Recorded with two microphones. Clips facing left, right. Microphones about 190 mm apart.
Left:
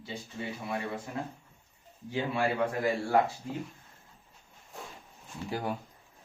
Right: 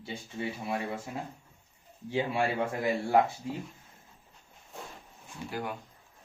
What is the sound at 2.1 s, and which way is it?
Speech, 20° right (ahead or behind).